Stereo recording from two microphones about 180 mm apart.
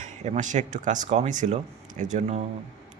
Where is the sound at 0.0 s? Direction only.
40° right (ahead or behind).